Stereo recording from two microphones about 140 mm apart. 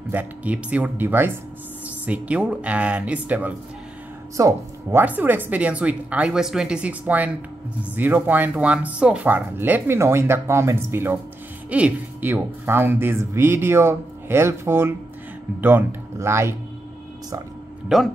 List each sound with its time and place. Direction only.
0.1 s speech: 10° right (ahead or behind)
4.4 s speech: 20° right (ahead or behind)
17.8 s speech: centre (ahead or behind)